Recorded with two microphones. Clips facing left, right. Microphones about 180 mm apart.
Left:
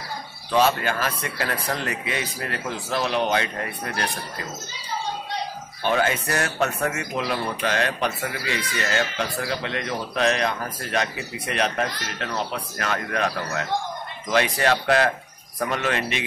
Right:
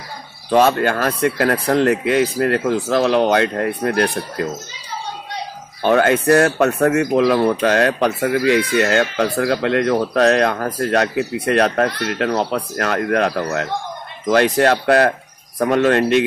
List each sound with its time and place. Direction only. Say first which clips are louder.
0.5 s speech: right 6 dB; 55° right (ahead or behind)
0.9 s speech: right 10 dB; 50° right (ahead or behind)
1.4 s speech: right 11 dB; 65° right (ahead or behind)
5.9 s speech: right 9 dB; 65° right (ahead or behind); by 7.4 s 80° right
7.4 s speech: right 10 dB; 50° right (ahead or behind)
7.8 s speech: right 9 dB; 65° right (ahead or behind); by 12.8 s 80° right
12.9 s speech: right 8 dB; 65° right (ahead or behind)
13.3 s speech: right 8 dB; 45° right (ahead or behind)
14.2 s speech: right 8 dB; 60° right (ahead or behind)